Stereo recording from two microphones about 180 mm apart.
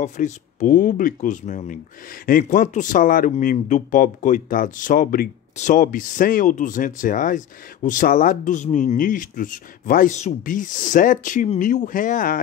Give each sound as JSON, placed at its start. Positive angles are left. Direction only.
{"t": 0.0, "sound": "speech", "side_deg": 45}